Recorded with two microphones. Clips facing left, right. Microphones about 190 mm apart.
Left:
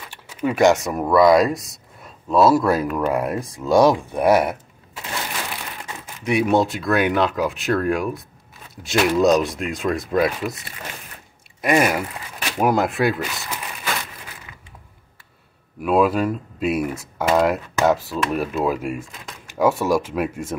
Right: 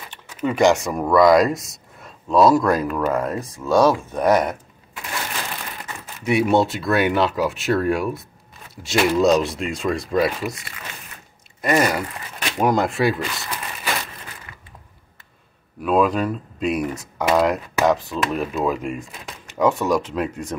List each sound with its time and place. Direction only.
0.1 s speech: 10° left (ahead or behind)
6.2 s speech: centre (ahead or behind)
11.6 s speech: 10° left (ahead or behind)
15.8 s speech: 10° left (ahead or behind)